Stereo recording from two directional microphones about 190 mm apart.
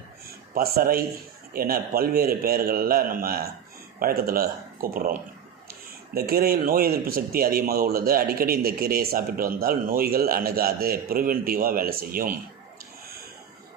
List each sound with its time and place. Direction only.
0.5 s speech: 50° right (ahead or behind)
6.1 s speech: 55° right (ahead or behind)